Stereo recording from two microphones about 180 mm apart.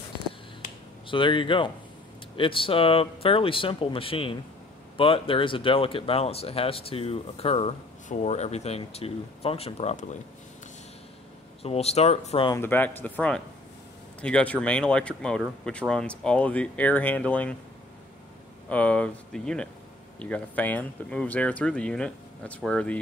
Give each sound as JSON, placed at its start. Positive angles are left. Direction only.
{"t": 0.6, "sound": "finger snapping", "side_deg": 30}
{"t": 2.3, "sound": "speech", "side_deg": 30}
{"t": 11.6, "sound": "speech", "side_deg": 35}
{"t": 12.4, "sound": "speech", "side_deg": 15}
{"t": 18.7, "sound": "speech", "side_deg": 5}